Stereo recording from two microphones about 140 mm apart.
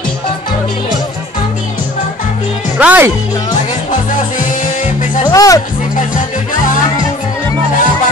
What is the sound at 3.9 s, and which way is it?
Music, 65° left (ahead or behind).